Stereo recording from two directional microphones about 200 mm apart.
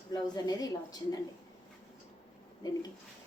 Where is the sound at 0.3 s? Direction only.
20° left (ahead or behind).